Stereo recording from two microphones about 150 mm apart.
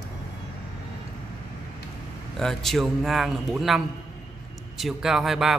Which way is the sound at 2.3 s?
Centre (ahead or behind).